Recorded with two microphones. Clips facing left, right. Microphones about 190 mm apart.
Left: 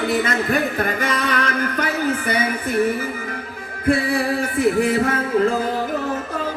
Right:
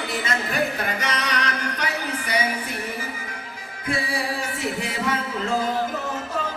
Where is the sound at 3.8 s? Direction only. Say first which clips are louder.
Left 8 dB; 55° left (ahead or behind).